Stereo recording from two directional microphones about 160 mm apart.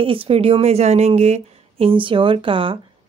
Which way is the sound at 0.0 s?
35° right (ahead or behind).